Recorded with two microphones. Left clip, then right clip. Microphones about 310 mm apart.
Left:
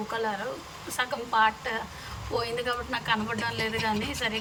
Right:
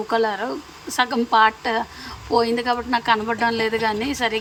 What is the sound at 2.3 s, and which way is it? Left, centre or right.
A woman's voice, centre.